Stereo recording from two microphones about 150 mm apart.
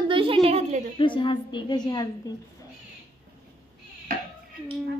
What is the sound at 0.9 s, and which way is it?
Speech, 35° left (ahead or behind).